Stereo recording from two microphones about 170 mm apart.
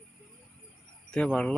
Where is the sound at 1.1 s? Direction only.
5° left (ahead or behind).